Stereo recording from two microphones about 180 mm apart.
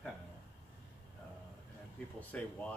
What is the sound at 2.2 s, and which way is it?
Speech, 10° left (ahead or behind).